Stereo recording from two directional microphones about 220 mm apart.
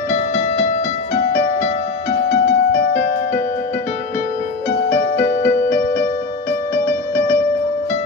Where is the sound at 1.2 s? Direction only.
40° left (ahead or behind).